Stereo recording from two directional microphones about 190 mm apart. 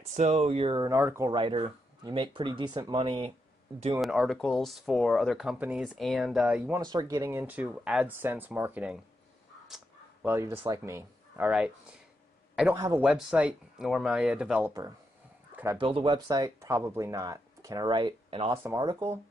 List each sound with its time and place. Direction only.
0.1 s speech: 35° right (ahead or behind)
0.7 s speech: 15° right (ahead or behind)
1.3 s speech: 25° right (ahead or behind)
3.9 s speech: 5° right (ahead or behind)
6.8 s speech: 20° right (ahead or behind)
10.2 s speech: 15° right (ahead or behind)
12.7 s speech: 15° right (ahead or behind)
13.0 s speech: 5° right (ahead or behind)
15.5 s a sound: 15° right (ahead or behind)
15.8 s speech: 25° right (ahead or behind)
18.6 s speech: 10° right (ahead or behind)